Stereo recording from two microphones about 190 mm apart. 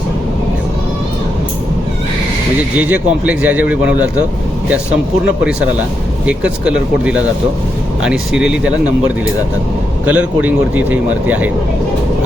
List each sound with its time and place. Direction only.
2.9 s a man's voice: 10° right (ahead or behind)
6.2 s speech: 5° right (ahead or behind)
10.1 s a man's voice: 10° right (ahead or behind)